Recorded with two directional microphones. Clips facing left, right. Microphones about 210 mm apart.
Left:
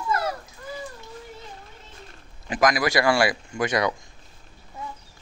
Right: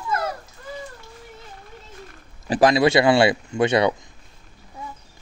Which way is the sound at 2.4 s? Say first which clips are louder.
Right 6 dB; 30° right (ahead or behind).